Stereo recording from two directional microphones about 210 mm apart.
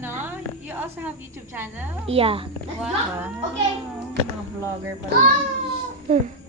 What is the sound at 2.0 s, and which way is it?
Speech, 25° right (ahead or behind).